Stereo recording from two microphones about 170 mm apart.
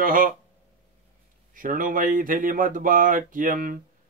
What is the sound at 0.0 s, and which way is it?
Speech, 55° right (ahead or behind).